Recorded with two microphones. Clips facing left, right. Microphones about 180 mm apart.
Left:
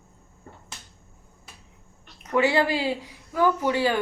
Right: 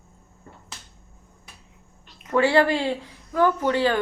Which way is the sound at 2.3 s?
20° left (ahead or behind).